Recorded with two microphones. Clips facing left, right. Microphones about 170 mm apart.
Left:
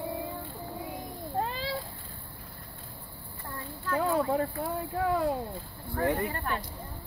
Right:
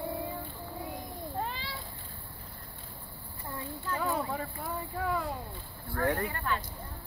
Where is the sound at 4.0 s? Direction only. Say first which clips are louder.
Left 7 dB; 45° left (ahead or behind).